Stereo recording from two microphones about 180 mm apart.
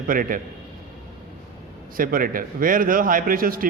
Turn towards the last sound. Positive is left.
turn(degrees=-55)  # may be behind; listen again after turning